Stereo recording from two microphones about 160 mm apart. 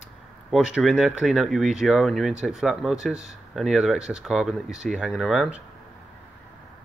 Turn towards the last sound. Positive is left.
turn(degrees=-5)  # may be behind; listen again after turning